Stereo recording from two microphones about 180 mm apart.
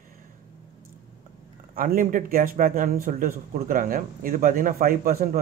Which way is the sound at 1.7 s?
50° right (ahead or behind).